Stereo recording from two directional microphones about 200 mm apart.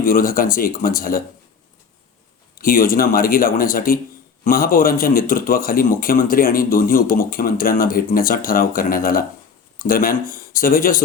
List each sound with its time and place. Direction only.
0.0 s a man's voice: 45° left (ahead or behind)
2.6 s a man's voice: 45° left (ahead or behind)